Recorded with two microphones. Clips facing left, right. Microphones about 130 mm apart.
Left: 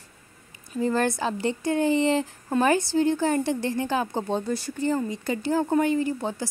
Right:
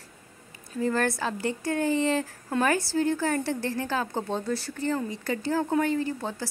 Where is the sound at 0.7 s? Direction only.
20° left (ahead or behind).